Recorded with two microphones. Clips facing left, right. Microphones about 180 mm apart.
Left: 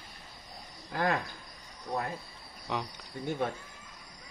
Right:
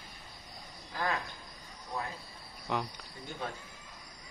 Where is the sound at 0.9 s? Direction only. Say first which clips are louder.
Left 5 dB; 60° left (ahead or behind).